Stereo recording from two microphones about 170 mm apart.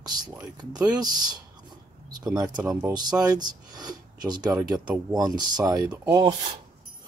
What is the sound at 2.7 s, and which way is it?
Speech, 20° right (ahead or behind).